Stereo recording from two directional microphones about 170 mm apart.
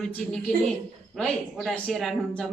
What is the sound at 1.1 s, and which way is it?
A woman's voice, 5° left (ahead or behind).